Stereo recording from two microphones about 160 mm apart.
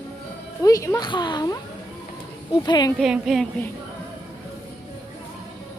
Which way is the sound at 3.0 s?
Centre (ahead or behind).